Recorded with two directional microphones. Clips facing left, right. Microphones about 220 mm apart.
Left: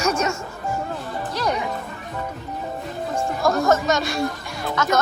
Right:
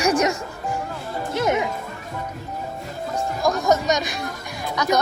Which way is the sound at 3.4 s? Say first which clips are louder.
Left 2 dB; 15° right (ahead or behind).